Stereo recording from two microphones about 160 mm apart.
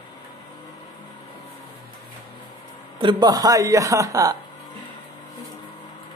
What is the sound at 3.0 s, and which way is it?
Speech, 30° right (ahead or behind).